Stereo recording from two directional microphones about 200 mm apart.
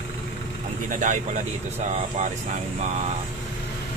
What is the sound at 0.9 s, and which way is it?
Speech, 40° right (ahead or behind).